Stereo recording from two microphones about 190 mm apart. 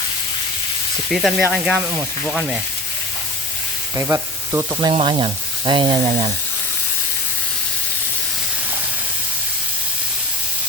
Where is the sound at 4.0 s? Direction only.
15° right (ahead or behind).